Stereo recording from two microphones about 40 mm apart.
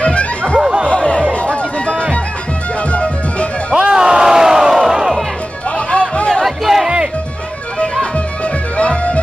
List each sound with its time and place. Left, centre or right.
0.0 s music: left
0.6 s laughter: right
0.8 s music: left
3.7 s music: right
5.9 s chatter: left
6.4 s crowd: centre
8.7 s music: left